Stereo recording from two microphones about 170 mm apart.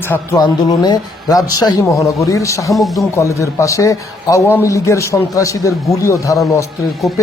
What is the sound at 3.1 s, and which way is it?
A man's voice, 20° left (ahead or behind).